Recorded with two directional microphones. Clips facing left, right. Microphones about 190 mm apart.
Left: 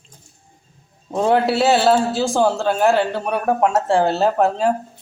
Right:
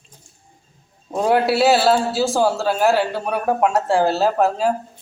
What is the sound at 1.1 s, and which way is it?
A man's voice, 10° right (ahead or behind).